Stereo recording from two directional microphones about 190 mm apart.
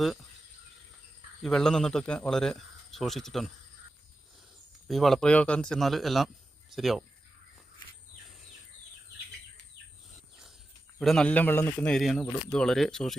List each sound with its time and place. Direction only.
1.4 s speech: 5° left (ahead or behind)
4.9 s speech: centre (ahead or behind)
11.0 s speech: 5° left (ahead or behind)